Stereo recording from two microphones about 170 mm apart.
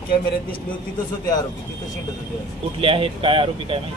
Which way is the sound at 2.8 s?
30° right (ahead or behind).